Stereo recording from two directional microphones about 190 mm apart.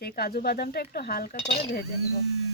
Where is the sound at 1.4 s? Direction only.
30° left (ahead or behind).